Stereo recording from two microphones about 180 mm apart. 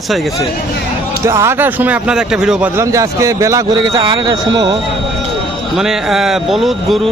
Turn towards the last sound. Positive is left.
turn(degrees=0)  # may be behind; listen again after turning